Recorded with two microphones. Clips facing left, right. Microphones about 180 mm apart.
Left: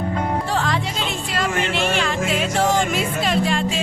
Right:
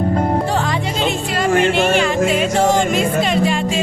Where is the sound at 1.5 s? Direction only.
45° right (ahead or behind).